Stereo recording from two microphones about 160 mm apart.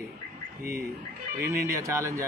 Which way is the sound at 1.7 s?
15° right (ahead or behind).